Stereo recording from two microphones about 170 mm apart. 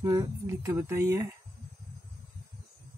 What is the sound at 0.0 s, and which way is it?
Speech, 20° right (ahead or behind).